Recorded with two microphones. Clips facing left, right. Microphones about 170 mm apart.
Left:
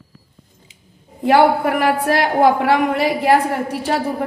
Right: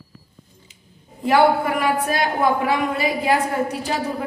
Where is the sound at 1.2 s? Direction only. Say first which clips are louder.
Left 3 dB; 65° left (ahead or behind).